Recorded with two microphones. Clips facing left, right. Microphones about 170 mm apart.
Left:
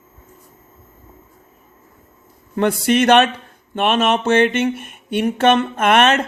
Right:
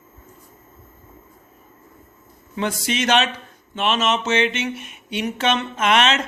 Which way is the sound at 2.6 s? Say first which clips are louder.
Left 8 dB; 55° left (ahead or behind).